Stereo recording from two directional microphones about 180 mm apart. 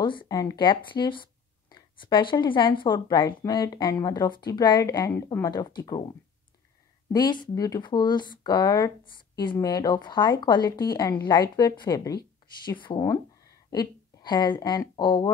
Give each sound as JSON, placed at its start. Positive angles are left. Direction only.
{"t": 0.0, "sound": "speech", "side_deg": 25}
{"t": 7.1, "sound": "a woman's voice", "side_deg": 25}